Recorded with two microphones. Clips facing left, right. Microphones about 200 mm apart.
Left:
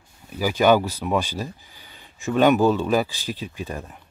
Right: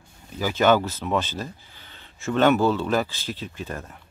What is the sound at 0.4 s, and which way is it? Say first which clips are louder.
Speech: left 2 dB; 10° left (ahead or behind).